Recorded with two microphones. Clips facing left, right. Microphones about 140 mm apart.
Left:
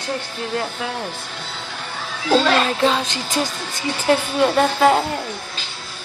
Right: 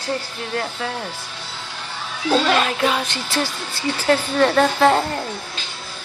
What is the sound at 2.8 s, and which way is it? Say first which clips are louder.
Speech: left 2 dB; 20° left (ahead or behind).